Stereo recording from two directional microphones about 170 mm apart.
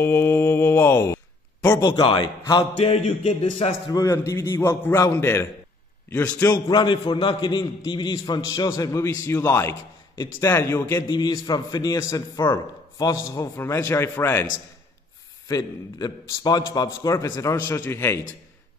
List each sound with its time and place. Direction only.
0.0 s speech: 15° left (ahead or behind); by 3.0 s 30° left (ahead or behind)
3.9 s a man's voice: 20° left (ahead or behind)